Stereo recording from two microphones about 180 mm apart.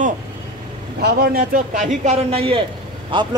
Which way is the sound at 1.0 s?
55° right (ahead or behind).